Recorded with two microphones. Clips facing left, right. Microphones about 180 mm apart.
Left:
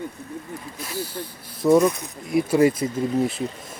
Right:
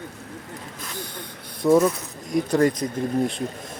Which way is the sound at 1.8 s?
10° left (ahead or behind).